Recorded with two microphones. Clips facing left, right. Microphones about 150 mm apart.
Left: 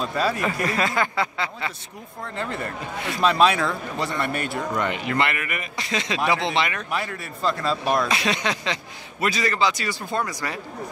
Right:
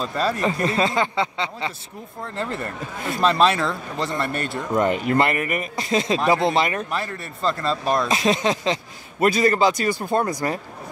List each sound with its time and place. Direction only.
0.1 s speech: 5° left (ahead or behind)
0.4 s speech: 25° right (ahead or behind)
3.2 s speech: centre (ahead or behind)
4.7 s a man's voice: 40° right (ahead or behind)
6.9 s speech: 5° left (ahead or behind)
8.1 s a man's voice: 40° right (ahead or behind)
9.2 s a man's voice: 50° right (ahead or behind)